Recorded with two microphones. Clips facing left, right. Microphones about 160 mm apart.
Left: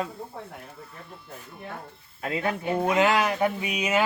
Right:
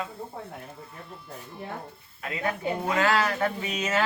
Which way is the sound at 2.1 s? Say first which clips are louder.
Left 6 dB; 30° left (ahead or behind).